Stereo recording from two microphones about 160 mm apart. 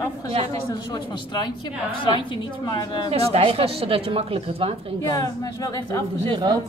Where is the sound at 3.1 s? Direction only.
40° right (ahead or behind).